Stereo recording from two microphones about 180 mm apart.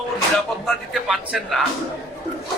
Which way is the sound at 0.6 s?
Centre (ahead or behind).